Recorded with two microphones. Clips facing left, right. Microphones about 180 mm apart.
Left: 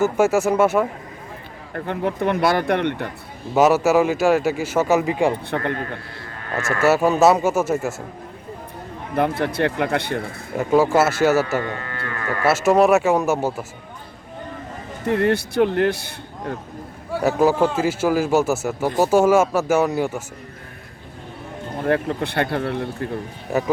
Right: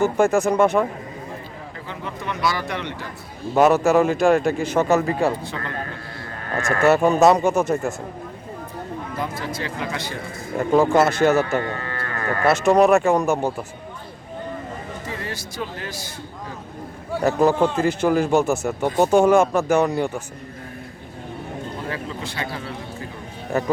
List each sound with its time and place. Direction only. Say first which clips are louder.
0.0 s speech: even; 5° left (ahead or behind)
1.7 s speech: left 11 dB; 60° left (ahead or behind)
3.5 s speech: even; 5° left (ahead or behind)
5.5 s speech: left 7 dB; 60° left (ahead or behind)
6.8 s speech: even; 5° left (ahead or behind)
9.1 s speech: left 10 dB; 60° left (ahead or behind)
10.6 s speech: even; 5° left (ahead or behind)
12.5 s speech: even; 5° left (ahead or behind)
15.0 s speech: left 12 dB; 60° left (ahead or behind)
17.2 s speech: even; 5° left (ahead or behind)
21.8 s speech: left 9 dB; 60° left (ahead or behind)
23.5 s speech: left 1 dB; 5° left (ahead or behind)